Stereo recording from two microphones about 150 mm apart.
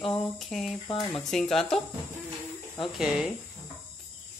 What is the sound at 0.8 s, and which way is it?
Speech, 30° left (ahead or behind).